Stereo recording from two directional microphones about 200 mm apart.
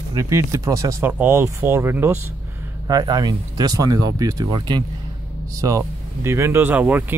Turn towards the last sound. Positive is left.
turn(degrees=-10)  # may be behind; listen again after turning